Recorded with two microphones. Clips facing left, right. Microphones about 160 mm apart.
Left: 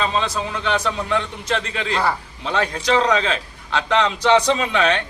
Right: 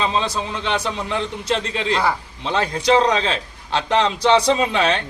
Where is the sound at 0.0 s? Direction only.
25° right (ahead or behind).